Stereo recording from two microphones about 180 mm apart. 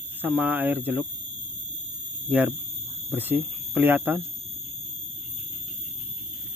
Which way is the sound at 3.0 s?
10° right (ahead or behind).